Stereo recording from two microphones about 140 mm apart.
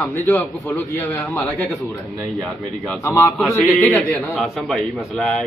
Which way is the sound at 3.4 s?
Centre (ahead or behind).